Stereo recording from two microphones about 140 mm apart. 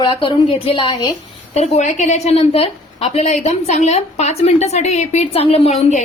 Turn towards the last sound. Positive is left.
turn(degrees=50)  # may be behind; listen again after turning